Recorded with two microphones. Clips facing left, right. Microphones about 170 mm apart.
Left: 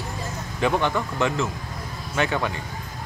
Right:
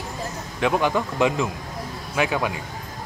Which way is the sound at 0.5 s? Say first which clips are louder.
Right 1 dB; 5° right (ahead or behind).